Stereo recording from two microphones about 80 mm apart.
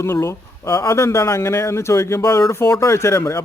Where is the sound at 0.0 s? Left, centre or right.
Left.